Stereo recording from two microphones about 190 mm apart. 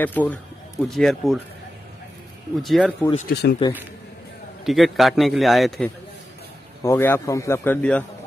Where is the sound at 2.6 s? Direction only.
5° left (ahead or behind).